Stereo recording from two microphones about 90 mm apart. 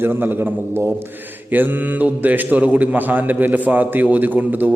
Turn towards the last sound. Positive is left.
turn(degrees=-20)  # may be behind; listen again after turning